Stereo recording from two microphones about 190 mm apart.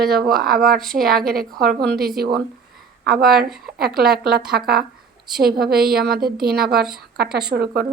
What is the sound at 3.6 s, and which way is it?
A woman's voice, 55° right (ahead or behind).